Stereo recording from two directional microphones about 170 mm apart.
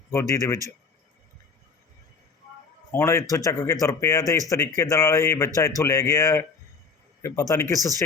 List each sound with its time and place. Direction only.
0.1 s speech: 15° left (ahead or behind)
2.9 s speech: 15° left (ahead or behind)